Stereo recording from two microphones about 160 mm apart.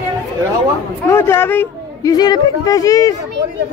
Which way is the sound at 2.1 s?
25° left (ahead or behind).